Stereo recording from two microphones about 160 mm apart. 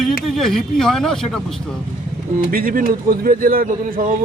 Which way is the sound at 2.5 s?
60° right (ahead or behind).